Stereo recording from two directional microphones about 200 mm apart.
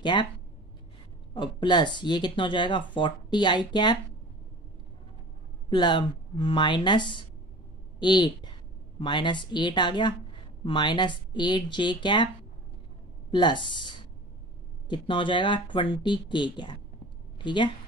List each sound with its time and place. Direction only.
0.0 s speech: 25° left (ahead or behind)
1.3 s speech: 20° left (ahead or behind)
5.7 s speech: 20° left (ahead or behind)
13.3 s speech: 25° left (ahead or behind)